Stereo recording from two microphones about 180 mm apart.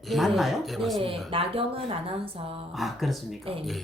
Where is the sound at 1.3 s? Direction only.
30° right (ahead or behind).